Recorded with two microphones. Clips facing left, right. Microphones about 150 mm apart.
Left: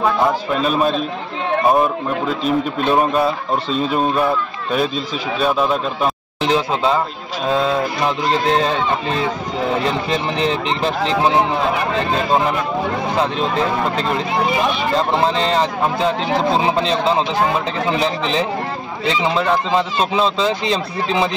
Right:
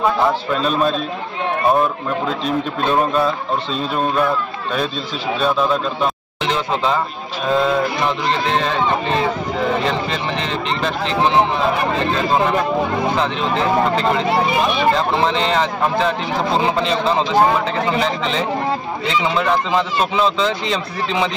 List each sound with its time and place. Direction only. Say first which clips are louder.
0.6 s a man's voice: left 2 dB; 5° left (ahead or behind)
2.4 s speech: left 4 dB; 5° left (ahead or behind)
15.2 s speech: left 1 dB; 35° left (ahead or behind)
19.2 s speech: left 1 dB; 30° left (ahead or behind)